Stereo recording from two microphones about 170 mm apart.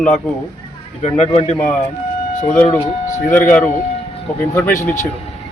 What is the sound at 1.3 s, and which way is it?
Speech, 40° left (ahead or behind).